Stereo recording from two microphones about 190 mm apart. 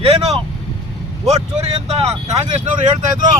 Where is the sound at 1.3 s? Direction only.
35° right (ahead or behind).